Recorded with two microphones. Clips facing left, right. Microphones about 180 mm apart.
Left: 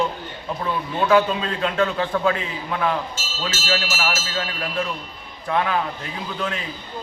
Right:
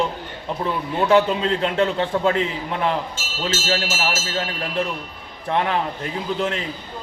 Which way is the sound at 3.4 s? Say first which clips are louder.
Right 2 dB; 25° right (ahead or behind).